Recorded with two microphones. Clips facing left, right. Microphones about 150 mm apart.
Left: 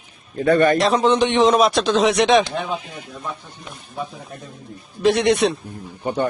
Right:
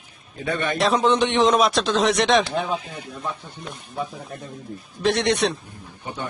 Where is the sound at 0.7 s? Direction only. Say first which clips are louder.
Left 3 dB; centre (ahead or behind).